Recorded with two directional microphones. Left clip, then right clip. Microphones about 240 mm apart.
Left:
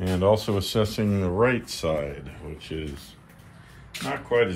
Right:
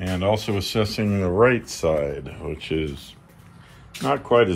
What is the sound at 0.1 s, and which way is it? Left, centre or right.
Speech, centre.